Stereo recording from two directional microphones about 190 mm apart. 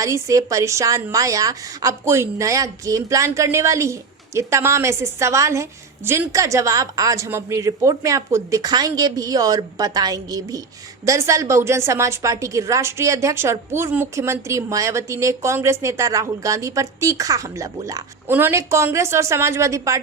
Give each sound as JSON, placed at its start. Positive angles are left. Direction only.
{"t": 0.0, "sound": "a woman's voice", "side_deg": -15}